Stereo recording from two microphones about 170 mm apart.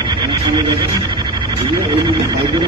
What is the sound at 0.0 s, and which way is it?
Speech, 25° right (ahead or behind).